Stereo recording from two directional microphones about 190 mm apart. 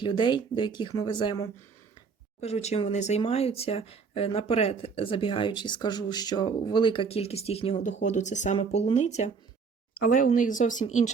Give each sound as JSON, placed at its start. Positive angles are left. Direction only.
{"t": 0.0, "sound": "speech", "side_deg": 25}
{"t": 2.4, "sound": "speech", "side_deg": 35}